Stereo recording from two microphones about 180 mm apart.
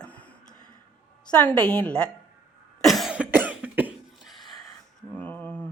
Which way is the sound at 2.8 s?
Centre (ahead or behind).